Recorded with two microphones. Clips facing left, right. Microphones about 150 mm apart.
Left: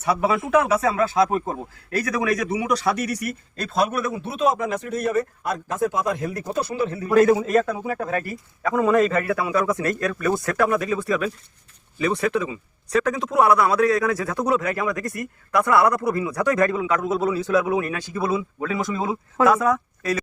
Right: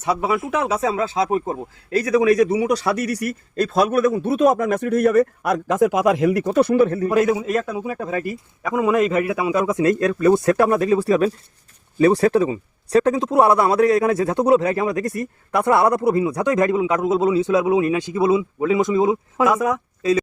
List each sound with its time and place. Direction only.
0.0 s speech: 20° right (ahead or behind); by 7.1 s 50° right (ahead or behind)
7.3 s speech: 5° right (ahead or behind)
7.9 s speech: 15° right (ahead or behind)